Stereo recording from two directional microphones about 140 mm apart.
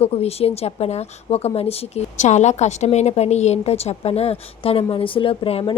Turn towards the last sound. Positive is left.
turn(degrees=40)  # may be behind; listen again after turning